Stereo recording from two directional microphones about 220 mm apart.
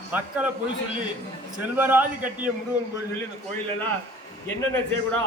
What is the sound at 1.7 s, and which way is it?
Speech, 10° right (ahead or behind).